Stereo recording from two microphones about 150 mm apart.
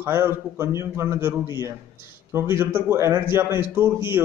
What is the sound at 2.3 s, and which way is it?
A man's voice, 15° right (ahead or behind).